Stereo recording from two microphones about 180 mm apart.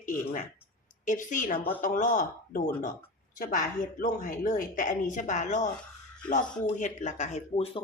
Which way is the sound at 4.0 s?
50° left (ahead or behind).